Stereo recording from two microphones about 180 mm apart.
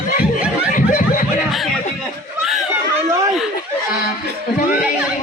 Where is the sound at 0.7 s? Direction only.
45° left (ahead or behind).